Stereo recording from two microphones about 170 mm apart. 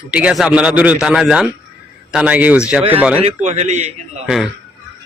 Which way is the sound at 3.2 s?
40° right (ahead or behind).